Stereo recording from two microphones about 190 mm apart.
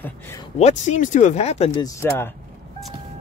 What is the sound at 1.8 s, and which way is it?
Speech, 15° left (ahead or behind).